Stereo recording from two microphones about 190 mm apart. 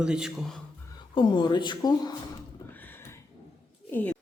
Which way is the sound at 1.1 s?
25° left (ahead or behind).